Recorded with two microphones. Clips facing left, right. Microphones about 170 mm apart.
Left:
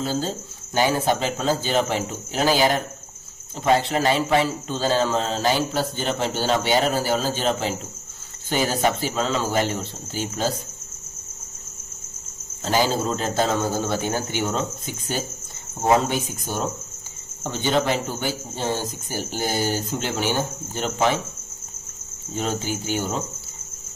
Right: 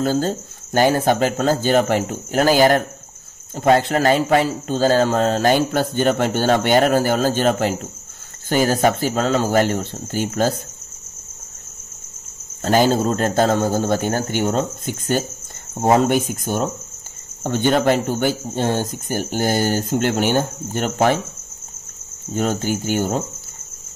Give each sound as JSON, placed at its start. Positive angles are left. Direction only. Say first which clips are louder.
{"t": 0.0, "sound": "speech", "louder": "right 6 dB", "side_deg": -50}
{"t": 12.6, "sound": "speech", "louder": "right 6 dB", "side_deg": -50}
{"t": 16.1, "sound": "speech", "louder": "right 7 dB", "side_deg": -55}
{"t": 22.3, "sound": "speech", "louder": "right 5 dB", "side_deg": -50}